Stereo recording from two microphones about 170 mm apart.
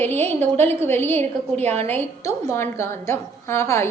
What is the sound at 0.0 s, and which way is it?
A woman's voice, 10° left (ahead or behind).